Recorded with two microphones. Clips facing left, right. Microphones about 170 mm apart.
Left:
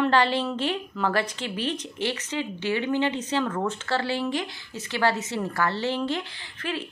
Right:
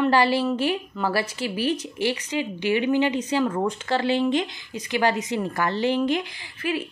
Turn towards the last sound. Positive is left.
turn(degrees=-10)  # may be behind; listen again after turning